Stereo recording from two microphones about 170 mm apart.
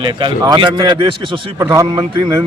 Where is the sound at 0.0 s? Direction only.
30° right (ahead or behind).